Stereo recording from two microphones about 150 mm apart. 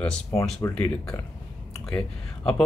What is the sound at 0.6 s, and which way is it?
Speech, 20° left (ahead or behind).